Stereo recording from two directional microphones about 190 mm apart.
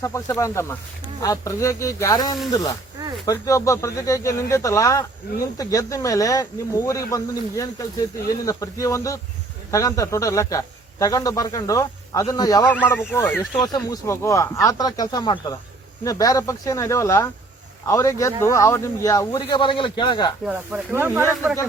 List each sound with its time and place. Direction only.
0.0 s speech: 15° left (ahead or behind)
12.6 s speech: 10° left (ahead or behind)
13.6 s speech: 20° left (ahead or behind)
20.4 s speech: 5° right (ahead or behind)